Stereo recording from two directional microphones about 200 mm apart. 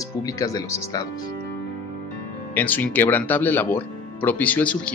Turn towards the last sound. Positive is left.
turn(degrees=5)  # may be behind; listen again after turning